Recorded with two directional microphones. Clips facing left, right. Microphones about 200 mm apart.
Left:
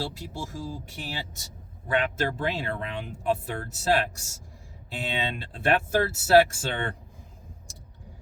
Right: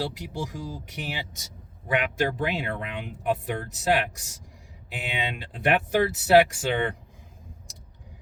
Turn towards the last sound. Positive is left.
turn(degrees=-20)  # may be behind; listen again after turning